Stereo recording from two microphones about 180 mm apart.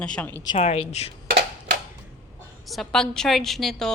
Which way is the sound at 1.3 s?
60° right (ahead or behind).